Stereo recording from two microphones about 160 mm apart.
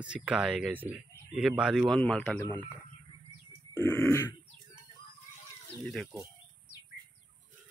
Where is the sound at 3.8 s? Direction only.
15° left (ahead or behind).